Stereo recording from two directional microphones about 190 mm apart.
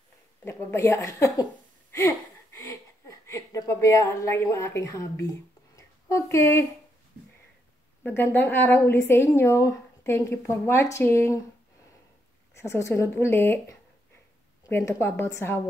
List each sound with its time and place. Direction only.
0.5 s a sound: 10° left (ahead or behind)
8.0 s a woman's voice: 10° left (ahead or behind)
12.5 s a woman's voice: 15° left (ahead or behind)